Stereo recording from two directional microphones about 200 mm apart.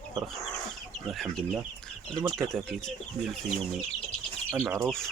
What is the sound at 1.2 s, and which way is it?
Speech, centre (ahead or behind).